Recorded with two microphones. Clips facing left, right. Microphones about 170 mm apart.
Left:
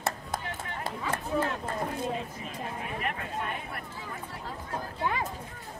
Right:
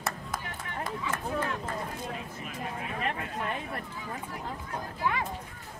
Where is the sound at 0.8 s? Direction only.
30° left (ahead or behind).